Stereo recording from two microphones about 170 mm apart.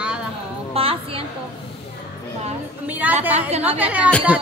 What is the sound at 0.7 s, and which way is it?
Speech, 35° right (ahead or behind).